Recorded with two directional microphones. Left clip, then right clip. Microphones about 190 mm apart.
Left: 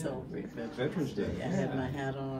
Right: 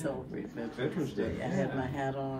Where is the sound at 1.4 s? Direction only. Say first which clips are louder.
Right 1 dB; 15° right (ahead or behind).